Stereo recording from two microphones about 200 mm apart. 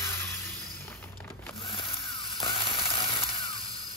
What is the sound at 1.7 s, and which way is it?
Music, 25° left (ahead or behind).